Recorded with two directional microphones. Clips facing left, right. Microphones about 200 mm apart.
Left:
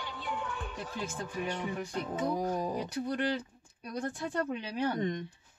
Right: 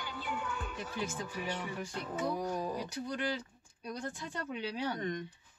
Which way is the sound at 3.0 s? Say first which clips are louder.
Left 5 dB; 60° left (ahead or behind).